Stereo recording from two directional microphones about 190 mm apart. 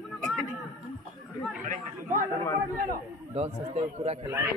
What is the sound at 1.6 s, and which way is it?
Speech, 45° right (ahead or behind).